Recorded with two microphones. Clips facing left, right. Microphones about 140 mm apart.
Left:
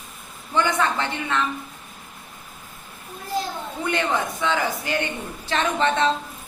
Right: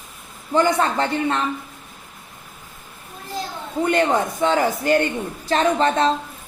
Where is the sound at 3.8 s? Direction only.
40° right (ahead or behind).